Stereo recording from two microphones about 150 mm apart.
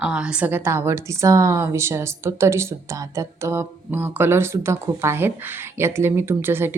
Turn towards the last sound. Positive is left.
turn(degrees=-15)  # may be behind; listen again after turning